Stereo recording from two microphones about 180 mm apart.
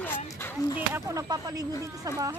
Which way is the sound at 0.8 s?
15° right (ahead or behind).